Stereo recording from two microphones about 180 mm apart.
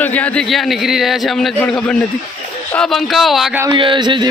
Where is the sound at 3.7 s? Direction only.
25° right (ahead or behind).